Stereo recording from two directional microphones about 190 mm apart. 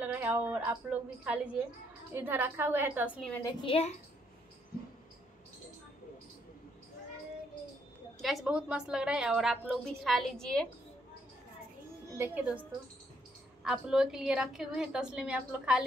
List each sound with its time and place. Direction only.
0.0 s a woman's voice: 10° right (ahead or behind)
3.4 s a woman's voice: 30° left (ahead or behind)
8.2 s a woman's voice: centre (ahead or behind)
12.2 s a woman's voice: 10° right (ahead or behind)
13.7 s a woman's voice: 5° right (ahead or behind)